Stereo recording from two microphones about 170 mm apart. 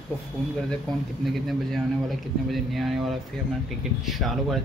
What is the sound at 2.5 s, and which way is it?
Speech, centre (ahead or behind).